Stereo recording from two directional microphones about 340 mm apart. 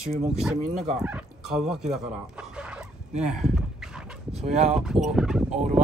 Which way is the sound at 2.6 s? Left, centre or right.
Centre.